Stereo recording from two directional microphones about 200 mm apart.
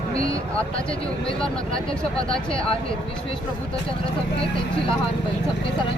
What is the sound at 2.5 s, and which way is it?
Speech, 25° left (ahead or behind).